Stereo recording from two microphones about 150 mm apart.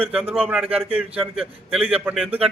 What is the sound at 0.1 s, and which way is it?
A man's voice, 5° right (ahead or behind).